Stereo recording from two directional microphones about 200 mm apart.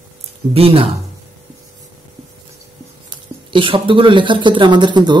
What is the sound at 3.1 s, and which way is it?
Speech, 25° right (ahead or behind).